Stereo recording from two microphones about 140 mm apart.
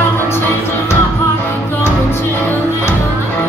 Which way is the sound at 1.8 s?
15° left (ahead or behind).